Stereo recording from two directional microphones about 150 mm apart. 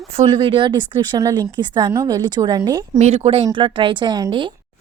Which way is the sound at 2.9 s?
45° right (ahead or behind).